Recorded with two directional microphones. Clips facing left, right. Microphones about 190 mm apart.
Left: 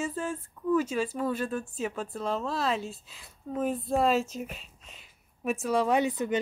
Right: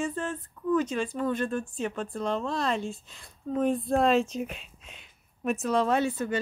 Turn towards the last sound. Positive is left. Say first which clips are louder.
# even
turn(degrees=15)  # may be behind; listen again after turning